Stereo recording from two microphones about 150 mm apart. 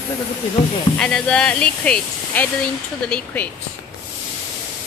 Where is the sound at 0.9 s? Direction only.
5° left (ahead or behind).